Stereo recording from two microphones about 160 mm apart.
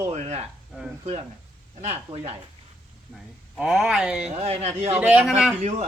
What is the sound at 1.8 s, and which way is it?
Speech, 40° right (ahead or behind).